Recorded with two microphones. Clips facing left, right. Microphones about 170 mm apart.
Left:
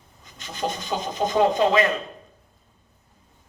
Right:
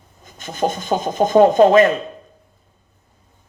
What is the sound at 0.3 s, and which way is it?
Speech, 50° right (ahead or behind).